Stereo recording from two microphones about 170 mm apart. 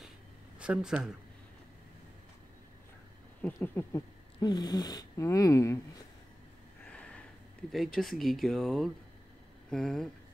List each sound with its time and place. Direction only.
0.6 s speech: 5° right (ahead or behind)
3.4 s speech: 10° left (ahead or behind)
6.8 s a sound: 5° left (ahead or behind)
7.7 s speech: centre (ahead or behind)